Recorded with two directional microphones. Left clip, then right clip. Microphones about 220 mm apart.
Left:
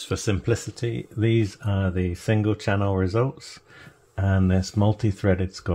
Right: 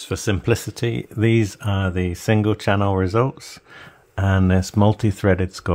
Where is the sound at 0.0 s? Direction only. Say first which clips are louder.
Right 3 dB; 20° right (ahead or behind).